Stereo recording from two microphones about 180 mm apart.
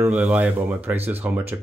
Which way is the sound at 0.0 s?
5° right (ahead or behind).